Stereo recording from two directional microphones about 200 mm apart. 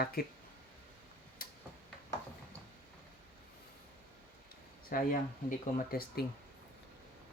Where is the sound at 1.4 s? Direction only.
45° left (ahead or behind).